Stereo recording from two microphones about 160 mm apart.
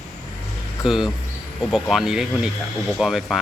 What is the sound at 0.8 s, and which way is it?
Speech, centre (ahead or behind).